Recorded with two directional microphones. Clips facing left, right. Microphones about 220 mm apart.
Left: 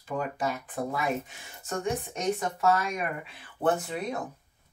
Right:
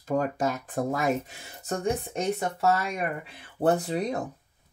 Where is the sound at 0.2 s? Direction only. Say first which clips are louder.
Right 4 dB; 45° right (ahead or behind).